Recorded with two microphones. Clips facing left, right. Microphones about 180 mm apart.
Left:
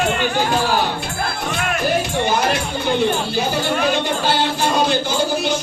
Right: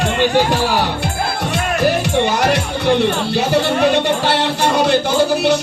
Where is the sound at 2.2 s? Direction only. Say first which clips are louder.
Right 3 dB; 70° right (ahead or behind).